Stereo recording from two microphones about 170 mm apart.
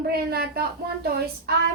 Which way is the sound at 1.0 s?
65° right (ahead or behind).